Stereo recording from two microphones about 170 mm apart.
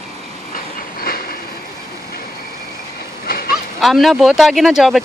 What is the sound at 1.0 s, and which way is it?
Train, 60° left (ahead or behind).